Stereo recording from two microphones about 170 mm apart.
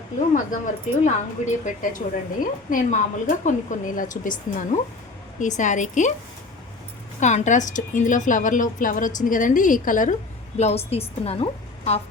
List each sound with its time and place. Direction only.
0.3 s a woman's voice: 45° left (ahead or behind)
7.2 s a woman's voice: 45° left (ahead or behind)
10.6 s a woman's voice: 35° left (ahead or behind)